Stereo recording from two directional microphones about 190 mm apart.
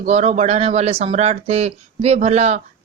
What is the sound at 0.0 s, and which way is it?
Speech, 35° right (ahead or behind).